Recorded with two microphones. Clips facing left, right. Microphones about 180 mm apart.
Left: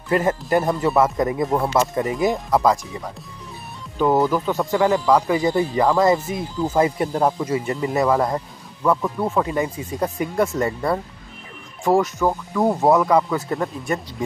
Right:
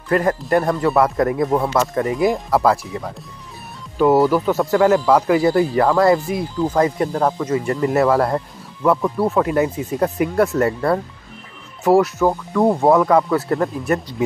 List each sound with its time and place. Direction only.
0.1 s speech: 5° left (ahead or behind)
4.0 s speech: 5° right (ahead or behind)
11.8 s speech: 5° right (ahead or behind)